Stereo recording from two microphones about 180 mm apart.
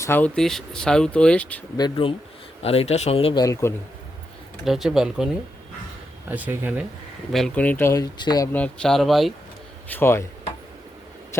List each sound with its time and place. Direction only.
0.0 s speech: 10° left (ahead or behind)
1.7 s speech: 25° left (ahead or behind)
3.4 s speech: 15° left (ahead or behind)
4.6 s speech: centre (ahead or behind)
7.3 s speech: 5° left (ahead or behind); by 8.4 s 20° left (ahead or behind)
8.5 s speech: 5° left (ahead or behind)
9.9 s speech: 15° left (ahead or behind)